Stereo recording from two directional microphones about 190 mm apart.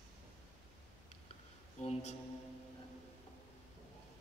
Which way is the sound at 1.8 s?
35° left (ahead or behind).